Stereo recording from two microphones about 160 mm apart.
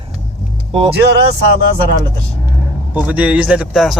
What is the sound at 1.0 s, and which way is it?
Speech, 90° right.